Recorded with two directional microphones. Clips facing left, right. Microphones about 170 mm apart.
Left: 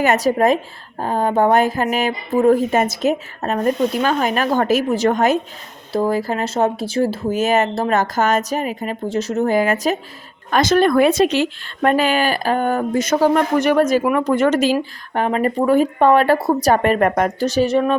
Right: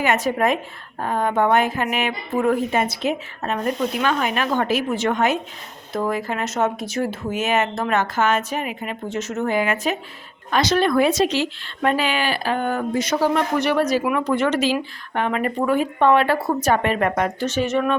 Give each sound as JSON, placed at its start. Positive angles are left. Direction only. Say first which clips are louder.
{"t": 0.0, "sound": "speech", "louder": "left 4 dB", "side_deg": 40}
{"t": 2.7, "sound": "speech", "louder": "left 4 dB", "side_deg": 45}